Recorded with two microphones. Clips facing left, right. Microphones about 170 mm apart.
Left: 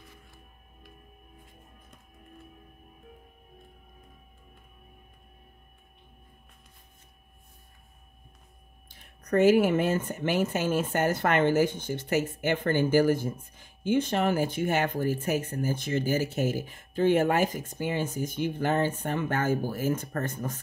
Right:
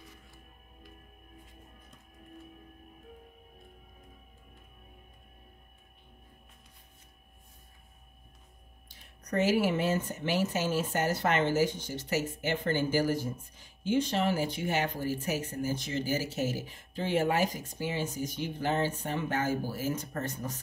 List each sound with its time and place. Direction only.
8.8 s speech: 50° left (ahead or behind)